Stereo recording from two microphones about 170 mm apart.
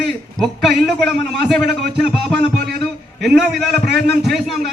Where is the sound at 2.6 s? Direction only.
70° right (ahead or behind).